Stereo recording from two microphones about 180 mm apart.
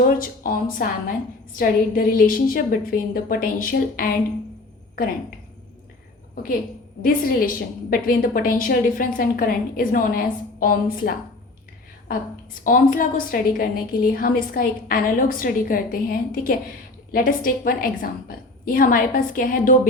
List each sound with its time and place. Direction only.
0.0 s a woman's voice: 50° left (ahead or behind)
7.0 s a woman's voice: 50° left (ahead or behind)
12.6 s a woman's voice: 50° left (ahead or behind)